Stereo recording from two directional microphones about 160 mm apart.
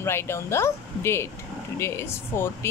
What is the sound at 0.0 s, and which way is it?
A woman's voice, 15° left (ahead or behind).